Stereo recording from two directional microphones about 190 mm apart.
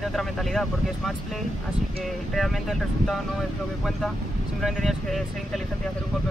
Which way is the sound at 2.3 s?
Centre (ahead or behind).